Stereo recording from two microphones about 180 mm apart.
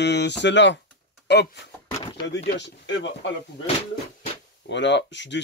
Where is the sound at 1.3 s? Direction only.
70° left (ahead or behind).